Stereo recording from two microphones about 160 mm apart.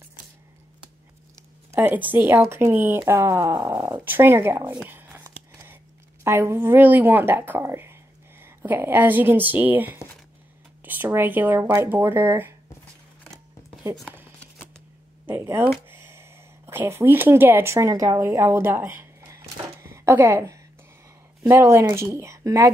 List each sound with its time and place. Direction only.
1.7 s a woman's voice: 10° right (ahead or behind)
5.5 s a sound: 20° right (ahead or behind)
6.2 s speech: 15° right (ahead or behind)
15.2 s speech: 15° right (ahead or behind)
15.9 s a sound: 15° right (ahead or behind)
21.5 s speech: 15° right (ahead or behind)